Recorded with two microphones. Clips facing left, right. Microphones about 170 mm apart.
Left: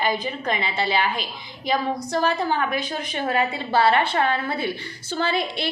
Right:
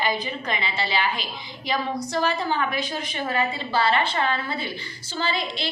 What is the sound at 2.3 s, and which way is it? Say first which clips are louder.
A woman's voice: left 2 dB; 50° left (ahead or behind).